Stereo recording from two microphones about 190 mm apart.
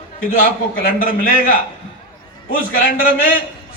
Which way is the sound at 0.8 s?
50° left (ahead or behind).